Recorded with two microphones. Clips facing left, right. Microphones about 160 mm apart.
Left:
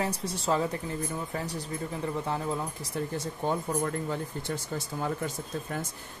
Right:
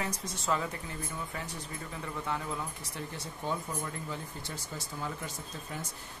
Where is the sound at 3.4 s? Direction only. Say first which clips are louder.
Left 6 dB; 60° left (ahead or behind).